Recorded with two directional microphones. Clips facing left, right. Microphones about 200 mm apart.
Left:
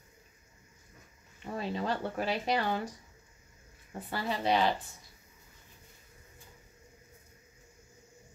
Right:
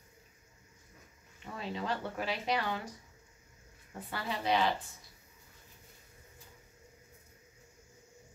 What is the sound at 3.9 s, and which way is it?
Speech, 35° left (ahead or behind).